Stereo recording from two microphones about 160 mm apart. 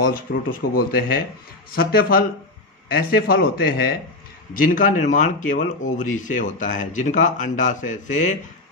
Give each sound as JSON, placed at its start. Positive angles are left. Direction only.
{"t": 0.0, "sound": "speech", "side_deg": 70}
{"t": 4.6, "sound": "speech", "side_deg": 60}